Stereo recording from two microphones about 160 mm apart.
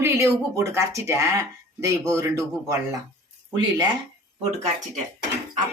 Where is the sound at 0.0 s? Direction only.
20° right (ahead or behind).